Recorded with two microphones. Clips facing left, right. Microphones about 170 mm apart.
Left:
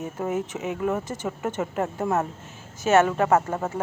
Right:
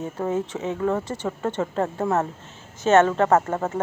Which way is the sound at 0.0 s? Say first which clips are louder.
Right 2 dB; 20° left (ahead or behind).